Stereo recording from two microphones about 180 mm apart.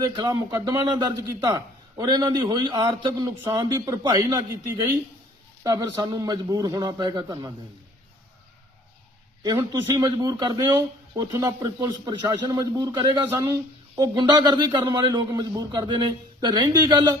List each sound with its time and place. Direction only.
0.0 s a man's voice: 25° right (ahead or behind)
5.6 s a man's voice: 20° right (ahead or behind)
9.4 s a man's voice: 20° right (ahead or behind)